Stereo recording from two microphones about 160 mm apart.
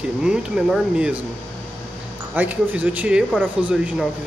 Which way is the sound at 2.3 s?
10° right (ahead or behind).